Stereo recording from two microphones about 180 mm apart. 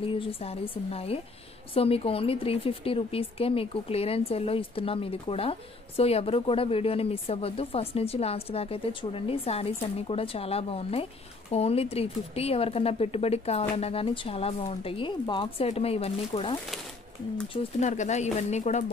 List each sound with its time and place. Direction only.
0.0 s a woman's voice: 30° left (ahead or behind)